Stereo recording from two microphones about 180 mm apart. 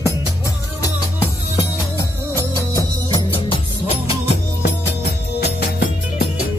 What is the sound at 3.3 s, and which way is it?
Music, 30° left (ahead or behind).